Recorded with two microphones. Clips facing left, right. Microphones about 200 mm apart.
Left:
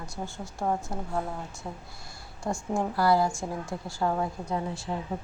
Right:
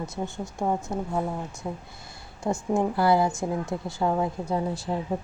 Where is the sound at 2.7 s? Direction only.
20° right (ahead or behind).